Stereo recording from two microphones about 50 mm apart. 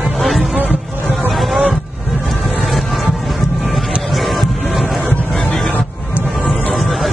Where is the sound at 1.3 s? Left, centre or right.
Centre.